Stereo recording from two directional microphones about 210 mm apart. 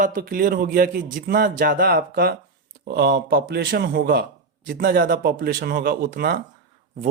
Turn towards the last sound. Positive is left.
turn(degrees=-45)  # may be behind; listen again after turning